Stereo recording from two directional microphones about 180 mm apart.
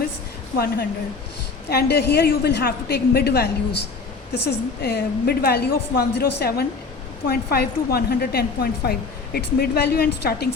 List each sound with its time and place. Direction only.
0.5 s a woman's voice: 60° left (ahead or behind)